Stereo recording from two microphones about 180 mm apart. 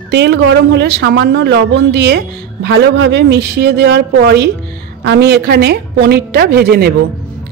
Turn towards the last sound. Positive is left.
turn(degrees=-60)  # may be behind; listen again after turning